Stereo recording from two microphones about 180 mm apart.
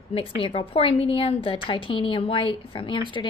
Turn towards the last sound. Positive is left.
turn(degrees=30)  # may be behind; listen again after turning